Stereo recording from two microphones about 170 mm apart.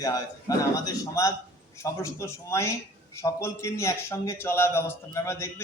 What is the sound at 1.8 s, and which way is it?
A man's voice, 15° left (ahead or behind).